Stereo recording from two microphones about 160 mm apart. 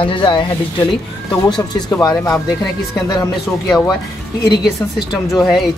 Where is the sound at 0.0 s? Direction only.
30° left (ahead or behind).